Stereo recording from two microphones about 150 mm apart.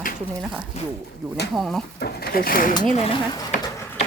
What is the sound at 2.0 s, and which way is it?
Speech, 90° left.